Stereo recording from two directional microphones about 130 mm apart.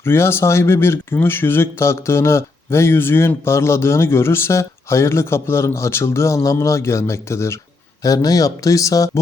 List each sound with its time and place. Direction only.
0.0 s speech: 20° left (ahead or behind)